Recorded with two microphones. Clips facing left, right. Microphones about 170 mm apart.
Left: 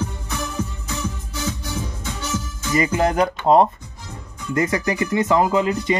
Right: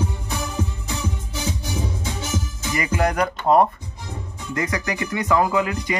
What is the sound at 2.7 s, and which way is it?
Speech, 25° left (ahead or behind).